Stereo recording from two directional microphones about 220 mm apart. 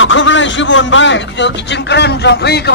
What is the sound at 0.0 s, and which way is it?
Speech, 60° left (ahead or behind).